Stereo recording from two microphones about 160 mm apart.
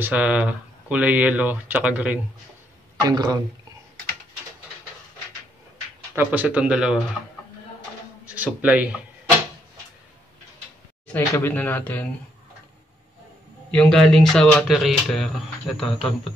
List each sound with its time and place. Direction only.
0.0 s speech: 10° right (ahead or behind)
3.1 s speech: 25° right (ahead or behind)
6.1 s speech: 10° right (ahead or behind)
8.4 s speech: 10° right (ahead or behind)
11.1 s speech: 15° left (ahead or behind)
13.7 s speech: 5° left (ahead or behind)